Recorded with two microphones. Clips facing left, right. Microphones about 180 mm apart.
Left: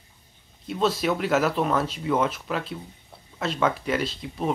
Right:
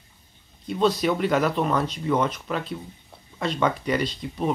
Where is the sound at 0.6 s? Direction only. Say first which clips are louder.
Right 2 dB; 5° left (ahead or behind).